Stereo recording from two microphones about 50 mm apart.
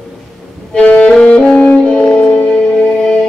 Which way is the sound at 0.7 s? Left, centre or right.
Left.